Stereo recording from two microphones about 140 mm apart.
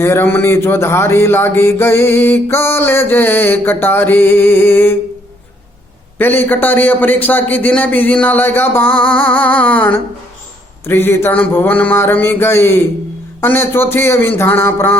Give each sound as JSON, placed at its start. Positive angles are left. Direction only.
{"t": 0.0, "sound": "speech", "side_deg": 20}
{"t": 6.1, "sound": "speech", "side_deg": 15}